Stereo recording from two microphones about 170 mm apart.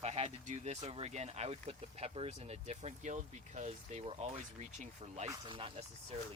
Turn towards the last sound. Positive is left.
turn(degrees=-35)  # may be behind; listen again after turning